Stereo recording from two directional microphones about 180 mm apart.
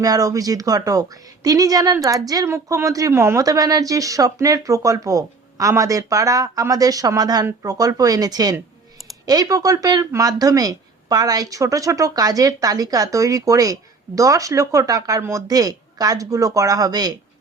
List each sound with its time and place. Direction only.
0.0 s a woman's voice: 20° right (ahead or behind)